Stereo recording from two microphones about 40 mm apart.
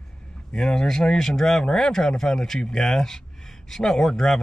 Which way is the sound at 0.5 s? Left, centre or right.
Centre.